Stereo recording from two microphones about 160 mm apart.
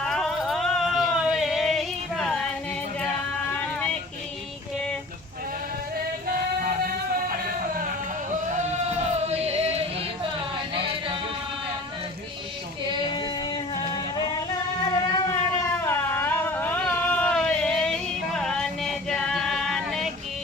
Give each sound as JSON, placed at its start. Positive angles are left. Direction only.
{"t": 0.0, "sound": "a sound", "side_deg": 0}
{"t": 3.6, "sound": "vehicle", "side_deg": 10}
{"t": 6.2, "sound": "music", "side_deg": -70}
{"t": 9.2, "sound": "music", "side_deg": -40}
{"t": 13.8, "sound": "music", "side_deg": 30}
{"t": 14.8, "sound": "a sound", "side_deg": 25}